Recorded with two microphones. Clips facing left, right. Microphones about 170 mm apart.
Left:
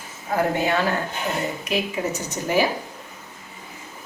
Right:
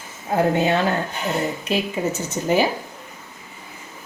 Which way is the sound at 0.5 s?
25° right (ahead or behind).